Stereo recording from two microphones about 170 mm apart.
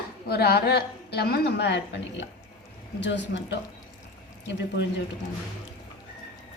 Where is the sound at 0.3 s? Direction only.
70° left (ahead or behind); by 4.9 s 90° left.